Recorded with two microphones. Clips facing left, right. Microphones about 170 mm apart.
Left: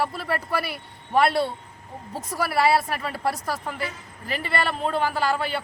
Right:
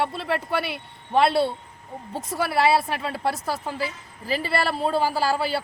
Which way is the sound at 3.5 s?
30° right (ahead or behind).